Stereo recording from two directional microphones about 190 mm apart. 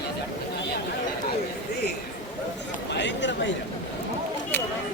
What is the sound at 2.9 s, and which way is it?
Chatter, 70° left (ahead or behind).